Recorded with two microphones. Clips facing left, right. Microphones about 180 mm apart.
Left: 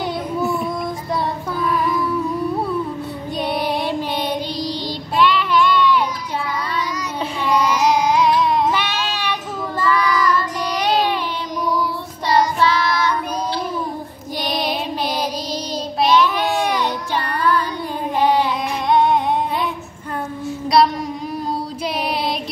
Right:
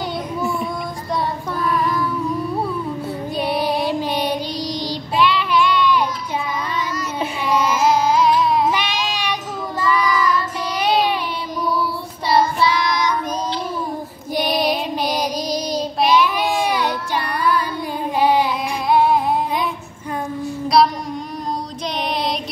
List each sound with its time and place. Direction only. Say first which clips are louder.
0.4 s child singing: left 2 dB; centre (ahead or behind)
3.3 s music: right 1 dB; centre (ahead or behind)
4.6 s child singing: even; 10° right (ahead or behind)
7.2 s music: left 1 dB; 5° right (ahead or behind)
8.7 s child singing: even; 15° right (ahead or behind)
12.3 s child singing: even; 10° right (ahead or behind)
14.4 s child singing: right 3 dB; 5° right (ahead or behind)
18.2 s music: even; 10° right (ahead or behind)
20.4 s child singing: even; centre (ahead or behind)